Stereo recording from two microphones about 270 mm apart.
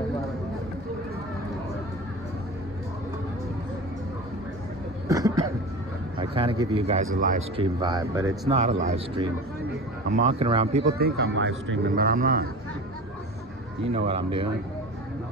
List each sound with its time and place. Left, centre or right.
5.0 s a sound: centre
6.1 s a man's voice: centre
8.5 s a man's voice: right
11.0 s speech: right
11.9 s speech: right
13.9 s a man's voice: centre